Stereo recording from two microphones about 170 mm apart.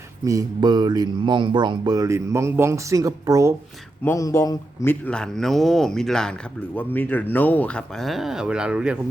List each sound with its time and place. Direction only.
0.3 s speech: 20° right (ahead or behind)
4.0 s a man's voice: 15° left (ahead or behind); by 9.0 s 5° right (ahead or behind)